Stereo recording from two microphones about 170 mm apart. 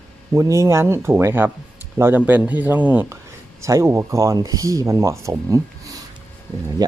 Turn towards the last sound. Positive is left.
turn(degrees=-20)  # may be behind; listen again after turning